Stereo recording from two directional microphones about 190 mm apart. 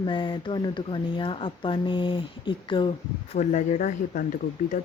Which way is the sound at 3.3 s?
40° left (ahead or behind).